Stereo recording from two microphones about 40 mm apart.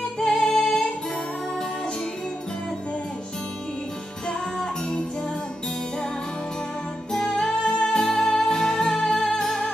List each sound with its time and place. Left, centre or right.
0.2 s music: centre
7.1 s music: centre